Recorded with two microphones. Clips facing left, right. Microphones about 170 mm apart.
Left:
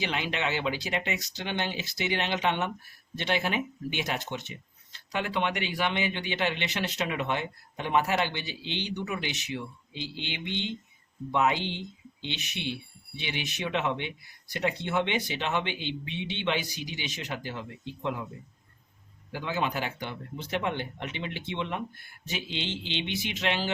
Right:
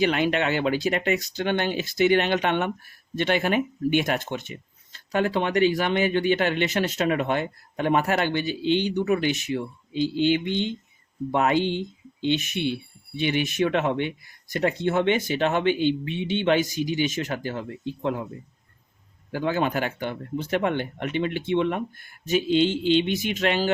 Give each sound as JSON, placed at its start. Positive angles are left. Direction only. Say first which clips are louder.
{"t": 0.0, "sound": "speech", "louder": "right 9 dB", "side_deg": -55}
{"t": 19.3, "sound": "speech", "louder": "right 6 dB", "side_deg": -50}